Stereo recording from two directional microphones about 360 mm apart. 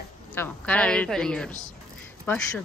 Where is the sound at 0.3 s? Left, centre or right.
Centre.